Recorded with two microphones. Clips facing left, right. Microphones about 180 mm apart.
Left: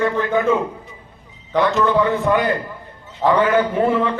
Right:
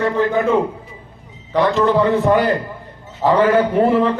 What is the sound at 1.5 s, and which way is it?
A man's voice, 35° right (ahead or behind).